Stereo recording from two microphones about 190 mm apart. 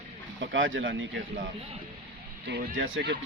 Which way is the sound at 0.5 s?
90° right.